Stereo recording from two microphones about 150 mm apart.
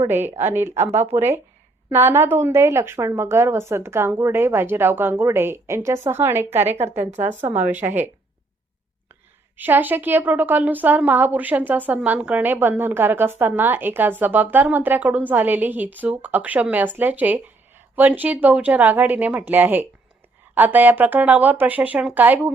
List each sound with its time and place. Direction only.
0.3 s speech: 15° right (ahead or behind)
7.1 s speech: 50° right (ahead or behind)
7.5 s speech: 10° right (ahead or behind)
9.6 s speech: 10° right (ahead or behind)